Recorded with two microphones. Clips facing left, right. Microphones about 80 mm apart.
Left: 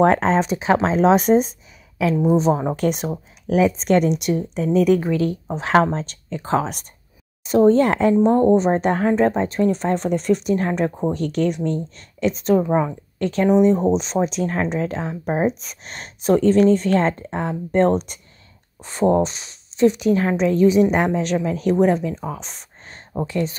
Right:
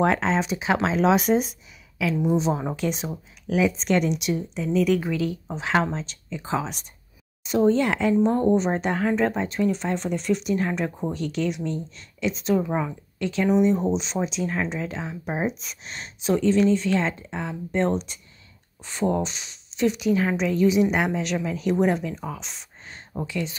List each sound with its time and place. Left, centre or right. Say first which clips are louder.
0.0 s speech: left 6 dB; left
12.6 s speech: left 7 dB; left
13.2 s speech: left 5 dB; left